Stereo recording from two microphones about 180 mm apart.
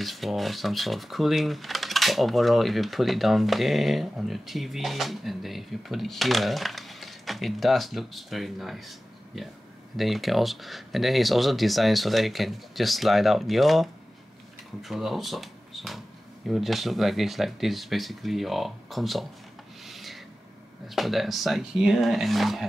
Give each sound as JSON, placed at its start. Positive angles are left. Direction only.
{"t": 0.0, "sound": "speech", "side_deg": 0}
{"t": 19.8, "sound": "filing", "side_deg": 0}
{"t": 20.9, "sound": "speech", "side_deg": 0}